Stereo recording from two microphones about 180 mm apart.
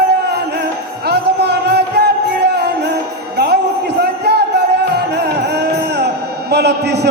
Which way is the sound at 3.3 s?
65° right (ahead or behind).